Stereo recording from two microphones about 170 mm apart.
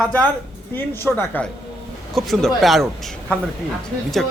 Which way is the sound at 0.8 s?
10° left (ahead or behind).